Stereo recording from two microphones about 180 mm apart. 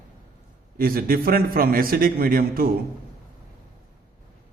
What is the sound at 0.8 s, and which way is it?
A man's voice, 55° right (ahead or behind).